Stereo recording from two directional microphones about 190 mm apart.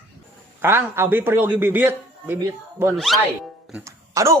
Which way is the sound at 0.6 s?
10° right (ahead or behind).